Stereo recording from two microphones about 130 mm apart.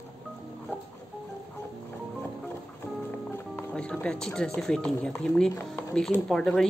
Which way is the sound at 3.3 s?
10° left (ahead or behind).